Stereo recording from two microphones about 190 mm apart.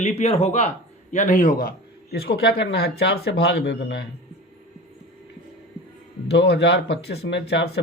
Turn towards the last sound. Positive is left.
turn(degrees=60)  # may be behind; listen again after turning